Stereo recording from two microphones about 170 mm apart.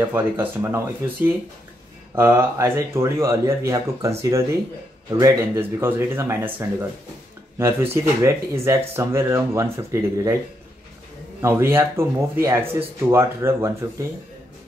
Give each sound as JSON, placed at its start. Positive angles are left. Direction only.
{"t": 0.0, "sound": "speech", "side_deg": -10}
{"t": 2.1, "sound": "speech", "side_deg": -15}
{"t": 11.4, "sound": "speech", "side_deg": -15}